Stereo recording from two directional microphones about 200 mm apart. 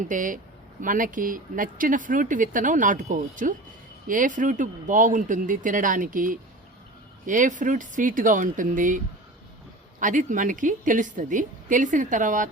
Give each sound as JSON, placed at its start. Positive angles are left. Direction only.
{"t": 0.0, "sound": "speech", "side_deg": -40}
{"t": 10.0, "sound": "speech", "side_deg": -40}